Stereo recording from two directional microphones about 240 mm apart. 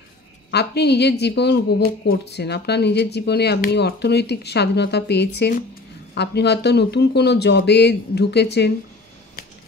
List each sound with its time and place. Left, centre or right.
0.5 s speech: left